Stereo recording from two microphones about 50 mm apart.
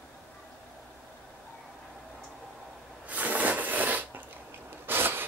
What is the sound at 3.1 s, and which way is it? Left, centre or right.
Filing, right.